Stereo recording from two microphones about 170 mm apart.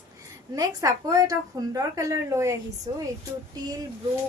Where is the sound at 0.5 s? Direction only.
20° right (ahead or behind).